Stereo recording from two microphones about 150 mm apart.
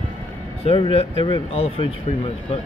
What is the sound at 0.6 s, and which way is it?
Speech, 40° left (ahead or behind).